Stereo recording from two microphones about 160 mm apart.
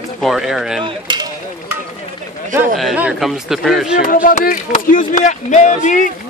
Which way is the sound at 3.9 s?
60° left (ahead or behind).